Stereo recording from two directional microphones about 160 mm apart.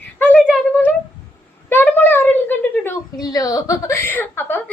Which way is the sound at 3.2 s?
25° left (ahead or behind).